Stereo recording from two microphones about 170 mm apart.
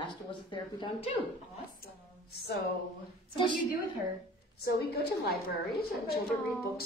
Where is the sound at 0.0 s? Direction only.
30° left (ahead or behind).